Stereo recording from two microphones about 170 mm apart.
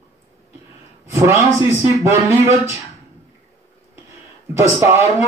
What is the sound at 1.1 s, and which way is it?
A man's voice, 15° right (ahead or behind).